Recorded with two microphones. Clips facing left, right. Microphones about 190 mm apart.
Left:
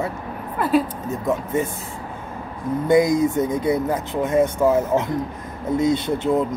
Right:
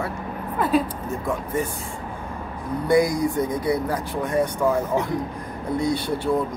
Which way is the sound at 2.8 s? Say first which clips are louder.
Left 3 dB; 25° left (ahead or behind).